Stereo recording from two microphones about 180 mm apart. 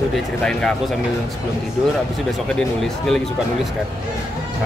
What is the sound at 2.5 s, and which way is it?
Speech, centre (ahead or behind).